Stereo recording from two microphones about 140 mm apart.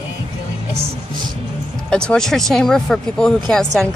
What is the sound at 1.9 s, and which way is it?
Speech, 5° left (ahead or behind).